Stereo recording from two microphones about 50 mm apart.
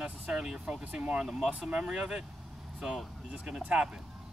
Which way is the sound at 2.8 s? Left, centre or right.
Centre.